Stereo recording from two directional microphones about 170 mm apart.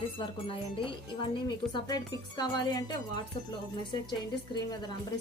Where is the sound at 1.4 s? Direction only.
25° left (ahead or behind).